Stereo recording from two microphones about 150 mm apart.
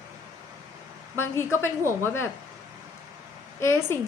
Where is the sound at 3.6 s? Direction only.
15° left (ahead or behind).